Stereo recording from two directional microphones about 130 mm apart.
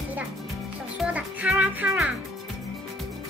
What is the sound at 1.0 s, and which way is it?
A child's voice, 10° right (ahead or behind).